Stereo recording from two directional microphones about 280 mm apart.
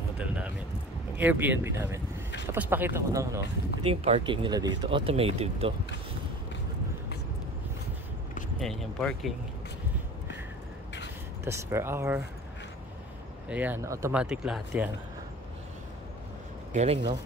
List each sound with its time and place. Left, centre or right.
0.2 s a sound: centre
1.1 s speech: centre
8.5 s speech: centre
11.4 s speech: centre
13.5 s speech: centre
16.7 s speech: right